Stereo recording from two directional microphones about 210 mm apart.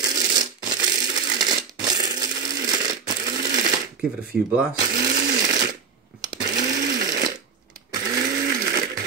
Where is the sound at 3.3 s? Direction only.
45° right (ahead or behind).